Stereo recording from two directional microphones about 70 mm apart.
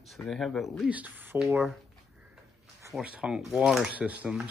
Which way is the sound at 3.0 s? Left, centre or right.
Centre.